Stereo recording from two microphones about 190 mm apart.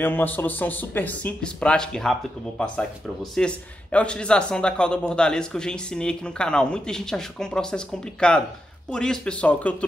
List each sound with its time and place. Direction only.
0.0 s speech: 10° left (ahead or behind)
3.2 s a man's voice: 5° left (ahead or behind)